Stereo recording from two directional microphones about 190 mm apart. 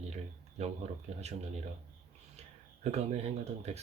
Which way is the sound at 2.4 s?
35° right (ahead or behind).